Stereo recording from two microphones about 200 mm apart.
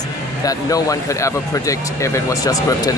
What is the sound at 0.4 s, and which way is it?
Speech, 15° left (ahead or behind).